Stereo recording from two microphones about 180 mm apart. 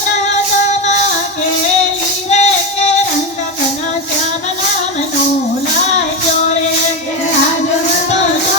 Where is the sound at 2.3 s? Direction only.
40° left (ahead or behind).